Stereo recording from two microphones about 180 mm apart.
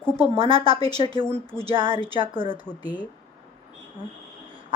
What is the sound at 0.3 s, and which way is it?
A woman's voice, 30° right (ahead or behind).